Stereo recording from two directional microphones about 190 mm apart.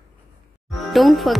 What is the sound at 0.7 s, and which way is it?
Speech, centre (ahead or behind).